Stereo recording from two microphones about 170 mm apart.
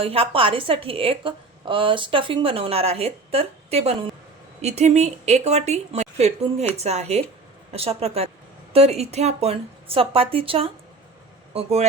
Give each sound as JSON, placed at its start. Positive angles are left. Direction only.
{"t": 0.0, "sound": "a woman's voice", "side_deg": -35}